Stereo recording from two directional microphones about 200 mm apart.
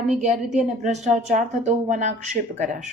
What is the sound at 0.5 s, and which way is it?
Speech, 35° right (ahead or behind).